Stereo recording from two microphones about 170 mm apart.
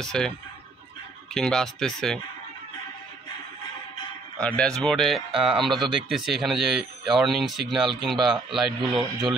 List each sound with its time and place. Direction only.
0.0 s a man's voice: 5° left (ahead or behind)
1.3 s a man's voice: 5° left (ahead or behind)
4.4 s a man's voice: 5° left (ahead or behind)